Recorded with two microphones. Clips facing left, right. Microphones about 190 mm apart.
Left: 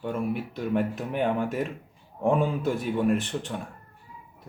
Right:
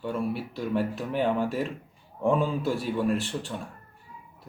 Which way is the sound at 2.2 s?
15° left (ahead or behind).